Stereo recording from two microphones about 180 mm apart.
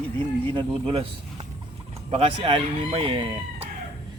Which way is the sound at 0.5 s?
30° right (ahead or behind).